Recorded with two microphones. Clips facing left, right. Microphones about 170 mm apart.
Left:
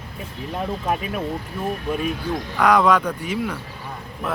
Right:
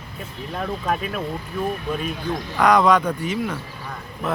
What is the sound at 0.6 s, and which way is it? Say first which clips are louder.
Speech: even; 15° left (ahead or behind).